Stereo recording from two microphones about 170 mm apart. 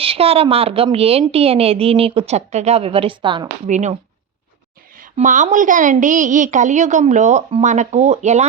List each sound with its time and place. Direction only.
0.0 s a woman's voice: 35° right (ahead or behind)
3.7 s a woman's voice: 45° right (ahead or behind)
5.1 s a woman's voice: 50° right (ahead or behind)